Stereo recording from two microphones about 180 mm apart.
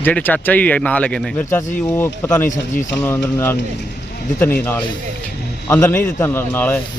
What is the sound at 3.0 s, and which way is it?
Speech, 10° left (ahead or behind).